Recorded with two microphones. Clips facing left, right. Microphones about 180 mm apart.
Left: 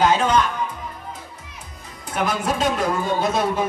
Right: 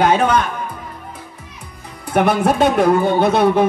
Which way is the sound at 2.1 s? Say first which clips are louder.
Right 8 dB; 60° right (ahead or behind).